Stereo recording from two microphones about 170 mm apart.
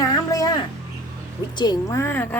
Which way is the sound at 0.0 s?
20° left (ahead or behind).